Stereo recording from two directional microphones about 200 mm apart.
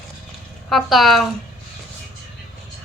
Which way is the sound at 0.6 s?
Centre (ahead or behind).